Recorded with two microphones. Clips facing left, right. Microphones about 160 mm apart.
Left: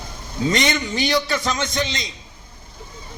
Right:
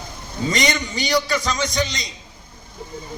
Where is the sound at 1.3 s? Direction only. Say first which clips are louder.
Even; centre (ahead or behind).